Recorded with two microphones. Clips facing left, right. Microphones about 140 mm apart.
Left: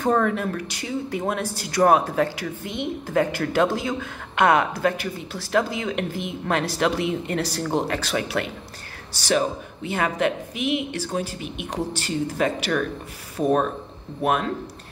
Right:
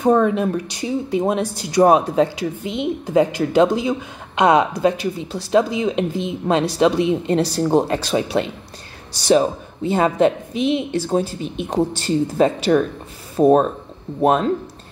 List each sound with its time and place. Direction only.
0.0 s speech: 15° right (ahead or behind)